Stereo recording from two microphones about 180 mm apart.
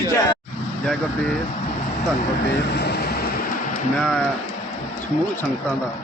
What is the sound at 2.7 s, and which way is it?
Vehicle, 65° left (ahead or behind).